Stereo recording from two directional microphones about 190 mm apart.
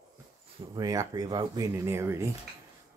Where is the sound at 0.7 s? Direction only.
20° right (ahead or behind).